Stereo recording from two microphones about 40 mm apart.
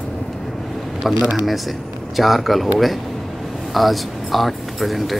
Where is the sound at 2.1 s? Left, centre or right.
Centre.